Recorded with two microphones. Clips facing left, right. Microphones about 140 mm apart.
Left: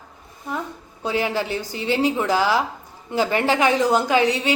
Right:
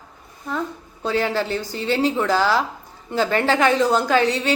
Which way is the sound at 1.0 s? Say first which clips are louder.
Right 1 dB; 15° left (ahead or behind).